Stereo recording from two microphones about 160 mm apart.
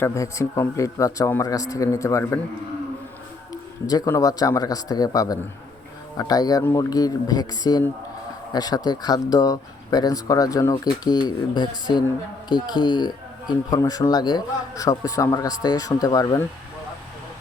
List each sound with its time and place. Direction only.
0.0 s speech: 20° left (ahead or behind)
3.5 s speech: 25° left (ahead or behind)